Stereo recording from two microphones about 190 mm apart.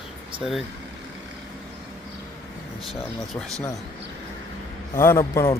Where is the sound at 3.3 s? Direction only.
5° left (ahead or behind).